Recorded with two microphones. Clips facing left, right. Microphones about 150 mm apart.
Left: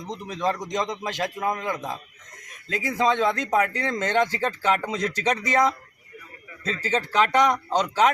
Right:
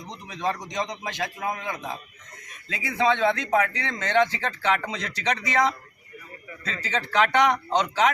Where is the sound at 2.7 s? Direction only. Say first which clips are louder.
Left 1 dB; 45° left (ahead or behind).